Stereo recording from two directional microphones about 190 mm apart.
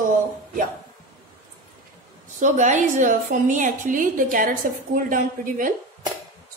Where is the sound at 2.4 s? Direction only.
40° right (ahead or behind).